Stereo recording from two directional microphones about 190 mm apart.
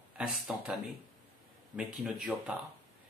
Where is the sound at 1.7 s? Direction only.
Centre (ahead or behind).